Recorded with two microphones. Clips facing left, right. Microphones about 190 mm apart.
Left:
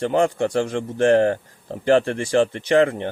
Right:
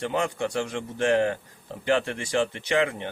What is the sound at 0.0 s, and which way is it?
Speech, 55° left (ahead or behind).